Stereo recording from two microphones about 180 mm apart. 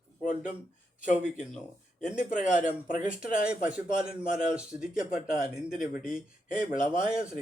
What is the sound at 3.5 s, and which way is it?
A man's voice, 5° right (ahead or behind).